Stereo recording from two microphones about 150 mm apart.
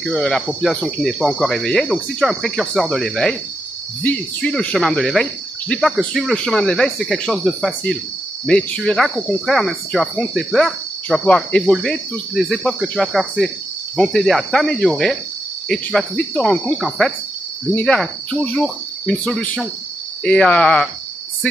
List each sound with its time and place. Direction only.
0.0 s speech: 5° left (ahead or behind)